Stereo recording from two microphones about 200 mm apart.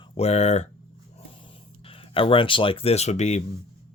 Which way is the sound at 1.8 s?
25° left (ahead or behind).